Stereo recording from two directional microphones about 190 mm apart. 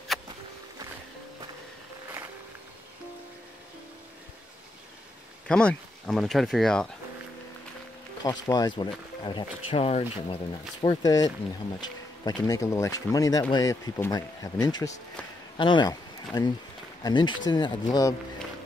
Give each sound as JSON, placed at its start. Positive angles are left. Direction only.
{"t": 0.1, "sound": "a sound", "side_deg": 0}
{"t": 5.5, "sound": "speech", "side_deg": 5}
{"t": 8.2, "sound": "speech", "side_deg": 20}